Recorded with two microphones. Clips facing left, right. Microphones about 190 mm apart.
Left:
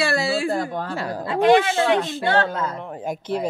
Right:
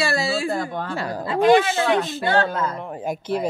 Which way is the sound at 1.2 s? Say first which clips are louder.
Even; 65° left (ahead or behind).